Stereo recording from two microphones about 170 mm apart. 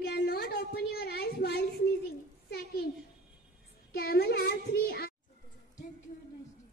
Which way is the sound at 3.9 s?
65° left (ahead or behind).